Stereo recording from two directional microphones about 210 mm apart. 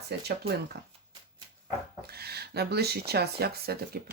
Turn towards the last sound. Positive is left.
turn(degrees=-45)  # may be behind; listen again after turning